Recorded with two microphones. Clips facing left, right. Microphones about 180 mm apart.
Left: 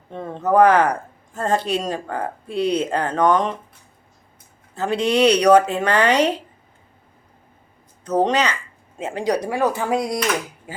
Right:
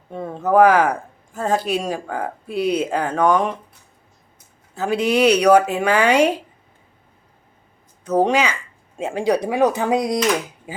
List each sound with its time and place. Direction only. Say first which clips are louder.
0.1 s speech: right 1 dB; 5° right (ahead or behind)
4.7 s speech: right 1 dB; 5° right (ahead or behind)
8.0 s speech: right 1 dB; 10° right (ahead or behind)